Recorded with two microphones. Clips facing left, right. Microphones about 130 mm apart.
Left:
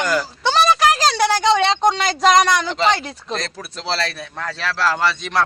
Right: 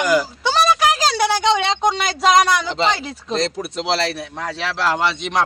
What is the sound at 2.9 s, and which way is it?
Speech, 5° right (ahead or behind).